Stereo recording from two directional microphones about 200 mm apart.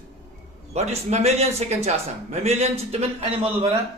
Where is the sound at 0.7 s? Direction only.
35° right (ahead or behind).